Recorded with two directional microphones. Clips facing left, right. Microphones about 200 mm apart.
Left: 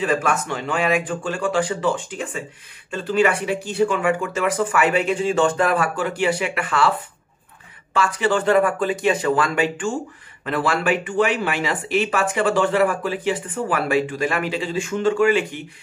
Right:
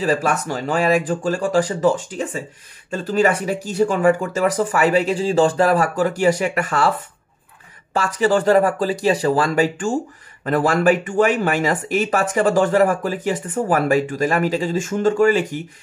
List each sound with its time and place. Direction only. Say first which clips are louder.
0.0 s speech: right 2 dB; 35° right (ahead or behind)
7.9 s speech: right 3 dB; 40° right (ahead or behind)